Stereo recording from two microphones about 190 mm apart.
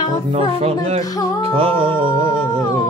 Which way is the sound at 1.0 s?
20° left (ahead or behind).